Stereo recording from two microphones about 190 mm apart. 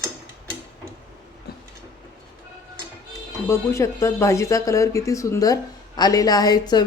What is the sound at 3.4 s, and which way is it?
Speech, 15° left (ahead or behind).